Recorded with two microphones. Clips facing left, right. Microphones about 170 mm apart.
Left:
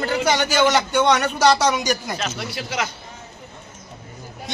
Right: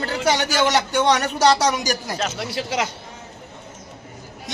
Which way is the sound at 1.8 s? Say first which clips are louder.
Even; 35° right (ahead or behind).